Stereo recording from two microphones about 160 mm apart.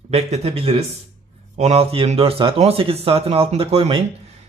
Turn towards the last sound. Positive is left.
turn(degrees=-35)  # may be behind; listen again after turning